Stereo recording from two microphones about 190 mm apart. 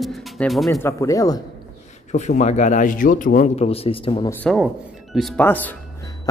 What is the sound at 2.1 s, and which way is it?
Speech, 40° left (ahead or behind).